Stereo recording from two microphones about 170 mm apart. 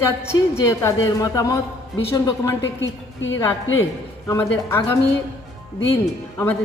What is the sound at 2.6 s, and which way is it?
Speech, 90° left.